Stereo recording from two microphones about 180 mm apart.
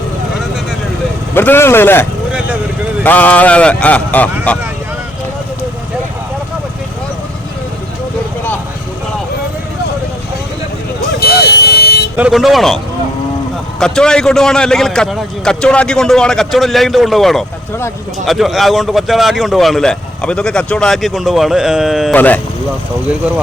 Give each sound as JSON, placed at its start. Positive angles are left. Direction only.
{"t": 1.3, "sound": "speech", "side_deg": 10}
{"t": 11.2, "sound": "car alarm", "side_deg": 60}
{"t": 12.1, "sound": "a man's voice", "side_deg": -5}
{"t": 22.1, "sound": "speech", "side_deg": 10}